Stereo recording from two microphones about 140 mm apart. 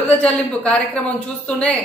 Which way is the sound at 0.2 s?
10° left (ahead or behind).